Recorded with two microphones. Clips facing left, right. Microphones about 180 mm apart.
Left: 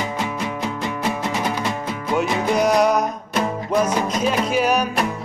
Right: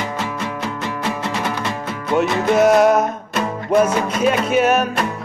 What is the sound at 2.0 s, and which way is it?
Music, centre (ahead or behind).